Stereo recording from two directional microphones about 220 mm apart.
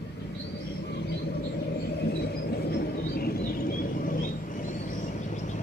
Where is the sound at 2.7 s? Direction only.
45° left (ahead or behind).